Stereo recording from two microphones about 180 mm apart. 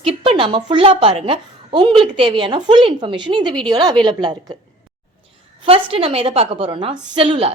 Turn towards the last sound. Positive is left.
turn(degrees=-30)  # may be behind; listen again after turning